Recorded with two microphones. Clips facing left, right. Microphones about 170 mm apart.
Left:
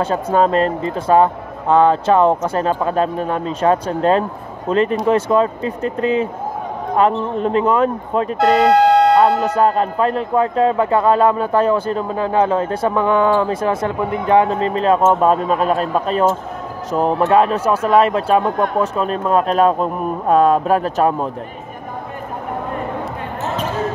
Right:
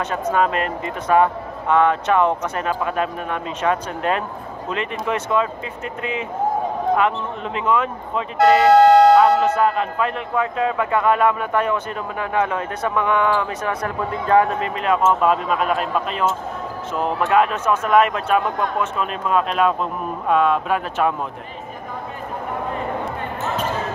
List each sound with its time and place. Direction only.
0.0 s a man's voice: 30° left (ahead or behind)
8.4 s speech: centre (ahead or behind)
9.4 s a man's voice: 35° left (ahead or behind)